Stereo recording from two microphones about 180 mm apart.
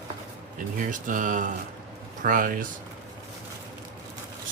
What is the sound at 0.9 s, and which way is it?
Speech, 45° right (ahead or behind).